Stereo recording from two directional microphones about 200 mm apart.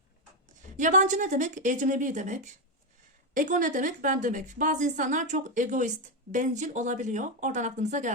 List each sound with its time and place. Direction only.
0.8 s a woman's voice: 40° right (ahead or behind)